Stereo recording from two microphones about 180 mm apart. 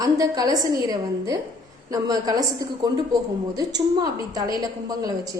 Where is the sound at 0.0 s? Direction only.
20° right (ahead or behind).